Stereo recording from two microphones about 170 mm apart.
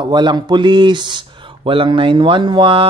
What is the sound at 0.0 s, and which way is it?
A man's voice, 25° right (ahead or behind).